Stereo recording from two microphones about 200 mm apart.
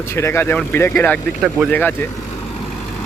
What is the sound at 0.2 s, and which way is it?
Speech, 10° left (ahead or behind).